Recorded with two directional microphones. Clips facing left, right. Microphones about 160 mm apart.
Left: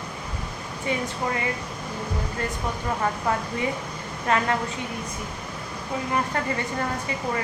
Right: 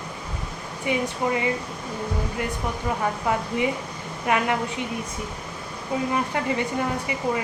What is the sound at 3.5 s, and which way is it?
Speech, 15° right (ahead or behind).